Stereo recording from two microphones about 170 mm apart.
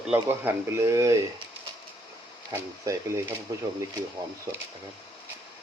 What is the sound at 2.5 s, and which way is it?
Speech, 20° right (ahead or behind).